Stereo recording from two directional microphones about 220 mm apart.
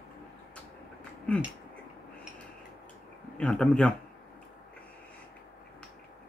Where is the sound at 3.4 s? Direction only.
5° left (ahead or behind).